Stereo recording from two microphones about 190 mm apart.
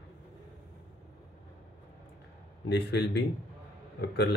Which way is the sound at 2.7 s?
65° left (ahead or behind).